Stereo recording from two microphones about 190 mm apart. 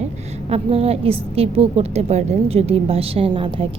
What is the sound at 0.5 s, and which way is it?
A woman's voice, 30° right (ahead or behind).